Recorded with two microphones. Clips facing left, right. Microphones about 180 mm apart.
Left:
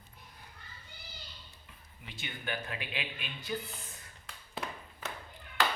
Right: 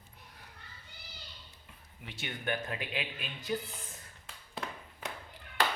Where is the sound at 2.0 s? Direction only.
55° right (ahead or behind).